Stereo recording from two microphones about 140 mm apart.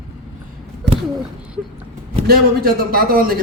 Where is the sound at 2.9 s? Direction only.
90° right.